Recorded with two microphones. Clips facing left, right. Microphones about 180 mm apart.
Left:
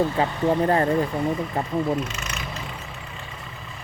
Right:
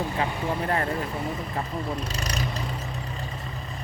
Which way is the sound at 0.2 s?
35° left (ahead or behind).